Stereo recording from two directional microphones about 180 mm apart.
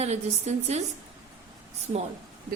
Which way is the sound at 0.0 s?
40° right (ahead or behind).